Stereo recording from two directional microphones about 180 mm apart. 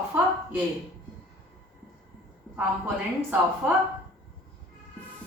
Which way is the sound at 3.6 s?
10° right (ahead or behind).